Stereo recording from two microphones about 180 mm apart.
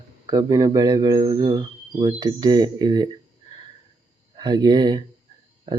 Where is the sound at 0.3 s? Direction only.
20° right (ahead or behind).